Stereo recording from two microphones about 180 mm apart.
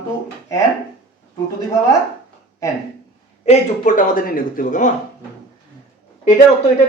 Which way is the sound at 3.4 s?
40° left (ahead or behind).